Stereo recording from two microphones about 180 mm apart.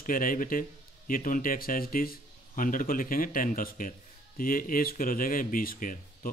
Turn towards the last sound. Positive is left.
turn(degrees=50)  # may be behind; listen again after turning